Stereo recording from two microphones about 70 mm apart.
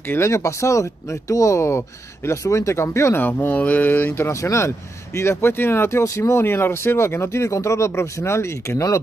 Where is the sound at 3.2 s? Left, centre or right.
Left.